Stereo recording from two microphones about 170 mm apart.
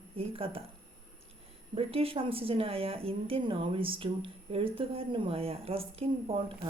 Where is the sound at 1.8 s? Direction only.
35° right (ahead or behind).